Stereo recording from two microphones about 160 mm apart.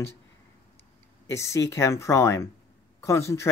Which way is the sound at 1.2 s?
20° left (ahead or behind).